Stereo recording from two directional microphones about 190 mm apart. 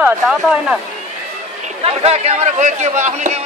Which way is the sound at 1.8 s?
30° right (ahead or behind).